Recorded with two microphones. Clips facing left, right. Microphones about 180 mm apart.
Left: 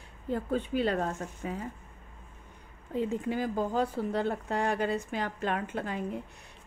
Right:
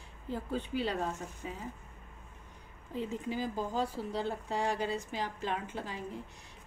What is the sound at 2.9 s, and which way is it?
Speech, 55° left (ahead or behind).